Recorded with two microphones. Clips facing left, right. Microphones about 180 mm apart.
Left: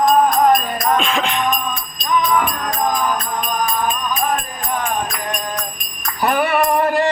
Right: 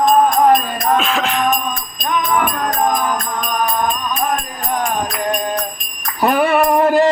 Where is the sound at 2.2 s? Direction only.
50° right (ahead or behind).